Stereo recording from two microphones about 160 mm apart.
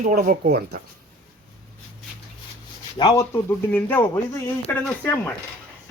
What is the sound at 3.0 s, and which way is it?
Speech, 25° left (ahead or behind).